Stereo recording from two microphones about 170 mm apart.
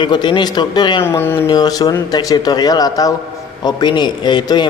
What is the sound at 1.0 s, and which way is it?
A man's voice, 15° left (ahead or behind).